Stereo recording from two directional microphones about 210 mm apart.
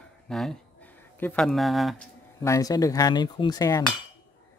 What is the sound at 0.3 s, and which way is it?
Speech, centre (ahead or behind).